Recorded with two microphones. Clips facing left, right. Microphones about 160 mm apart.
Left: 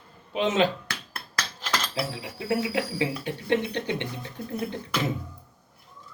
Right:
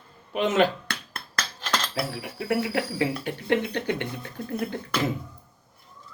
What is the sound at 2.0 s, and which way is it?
Speech, 20° left (ahead or behind).